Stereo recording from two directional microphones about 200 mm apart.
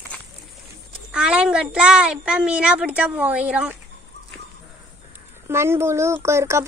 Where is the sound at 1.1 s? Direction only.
5° right (ahead or behind).